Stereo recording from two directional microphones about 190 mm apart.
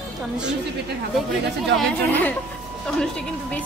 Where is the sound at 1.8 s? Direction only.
10° left (ahead or behind).